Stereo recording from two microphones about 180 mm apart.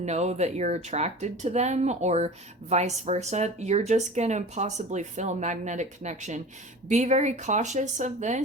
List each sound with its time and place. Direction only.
0.0 s speech: 40° right (ahead or behind)